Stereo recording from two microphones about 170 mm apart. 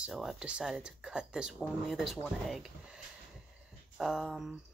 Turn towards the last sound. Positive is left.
turn(degrees=0)  # may be behind; listen again after turning